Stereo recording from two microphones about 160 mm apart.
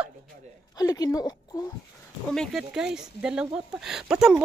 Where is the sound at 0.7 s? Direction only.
25° left (ahead or behind).